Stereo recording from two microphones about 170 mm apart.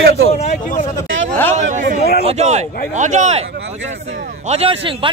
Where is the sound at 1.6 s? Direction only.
50° right (ahead or behind).